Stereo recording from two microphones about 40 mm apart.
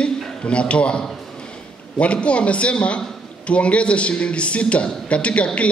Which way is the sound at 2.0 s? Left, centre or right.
Left.